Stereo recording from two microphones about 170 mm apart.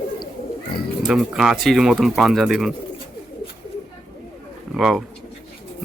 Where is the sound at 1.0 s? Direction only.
Centre (ahead or behind).